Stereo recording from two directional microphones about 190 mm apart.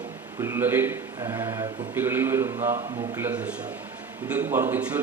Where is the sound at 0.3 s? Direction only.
15° right (ahead or behind).